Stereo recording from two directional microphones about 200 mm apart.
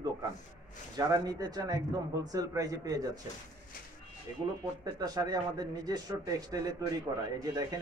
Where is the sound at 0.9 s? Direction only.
20° right (ahead or behind).